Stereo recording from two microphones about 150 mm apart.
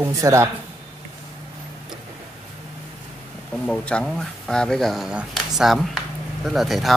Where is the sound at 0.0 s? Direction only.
20° right (ahead or behind).